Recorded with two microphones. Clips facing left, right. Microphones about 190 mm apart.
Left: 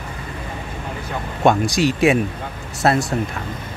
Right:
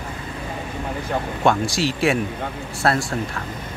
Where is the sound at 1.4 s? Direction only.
15° left (ahead or behind).